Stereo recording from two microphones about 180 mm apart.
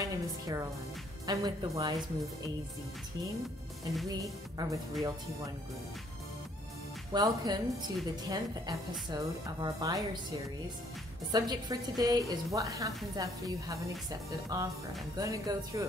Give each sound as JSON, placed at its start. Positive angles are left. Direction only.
{"t": 0.0, "sound": "music", "side_deg": -20}
{"t": 1.2, "sound": "a woman's voice", "side_deg": -20}
{"t": 3.8, "sound": "speech", "side_deg": 0}
{"t": 4.2, "sound": "a woman's voice", "side_deg": -20}
{"t": 7.1, "sound": "a woman's voice", "side_deg": -20}
{"t": 11.3, "sound": "a woman's voice", "side_deg": -20}